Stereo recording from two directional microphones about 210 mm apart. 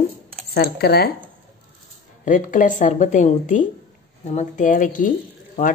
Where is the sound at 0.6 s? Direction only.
50° left (ahead or behind).